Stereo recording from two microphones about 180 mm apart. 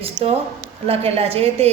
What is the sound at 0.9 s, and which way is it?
Speech, 35° right (ahead or behind).